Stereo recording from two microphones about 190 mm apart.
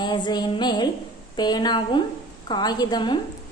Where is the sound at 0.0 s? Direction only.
25° left (ahead or behind).